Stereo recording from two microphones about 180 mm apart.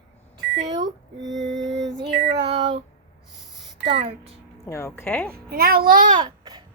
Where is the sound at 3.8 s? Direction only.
30° right (ahead or behind).